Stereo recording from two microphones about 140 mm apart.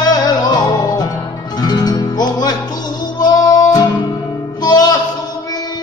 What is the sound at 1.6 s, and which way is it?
Music, 30° left (ahead or behind).